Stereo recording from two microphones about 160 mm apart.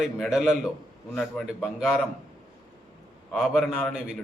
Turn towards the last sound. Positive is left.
turn(degrees=0)  # may be behind; listen again after turning